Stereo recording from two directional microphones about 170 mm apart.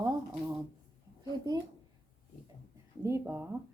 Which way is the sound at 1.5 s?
25° right (ahead or behind).